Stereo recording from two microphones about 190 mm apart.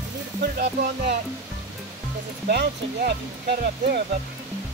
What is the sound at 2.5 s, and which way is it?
Speech, 55° right (ahead or behind).